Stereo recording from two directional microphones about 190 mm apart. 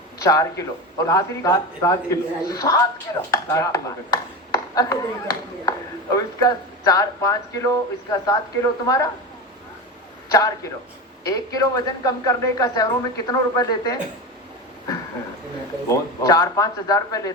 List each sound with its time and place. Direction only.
0.2 s a man's voice: 20° left (ahead or behind)
10.2 s a man's voice: 20° left (ahead or behind)
15.9 s a man's voice: 20° left (ahead or behind)